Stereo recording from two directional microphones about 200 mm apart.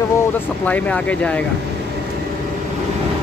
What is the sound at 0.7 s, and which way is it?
Speech, 5° left (ahead or behind).